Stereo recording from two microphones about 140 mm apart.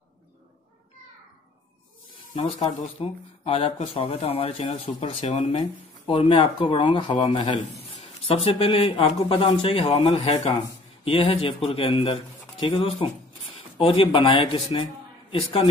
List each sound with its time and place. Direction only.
2.3 s speech: 45° left (ahead or behind)
6.0 s speech: 40° left (ahead or behind)